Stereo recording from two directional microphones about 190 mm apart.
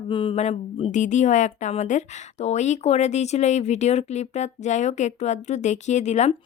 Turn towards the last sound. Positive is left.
turn(degrees=35)  # may be behind; listen again after turning